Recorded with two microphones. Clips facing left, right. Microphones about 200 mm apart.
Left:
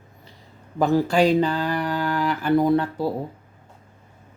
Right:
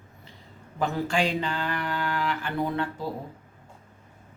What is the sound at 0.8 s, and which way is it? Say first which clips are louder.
Speech: left 8 dB; 40° left (ahead or behind).